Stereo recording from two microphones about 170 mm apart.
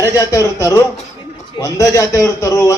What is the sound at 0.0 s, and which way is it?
A man's voice, 20° left (ahead or behind).